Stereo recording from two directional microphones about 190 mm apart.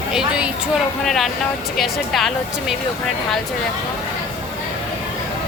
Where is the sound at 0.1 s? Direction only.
5° right (ahead or behind).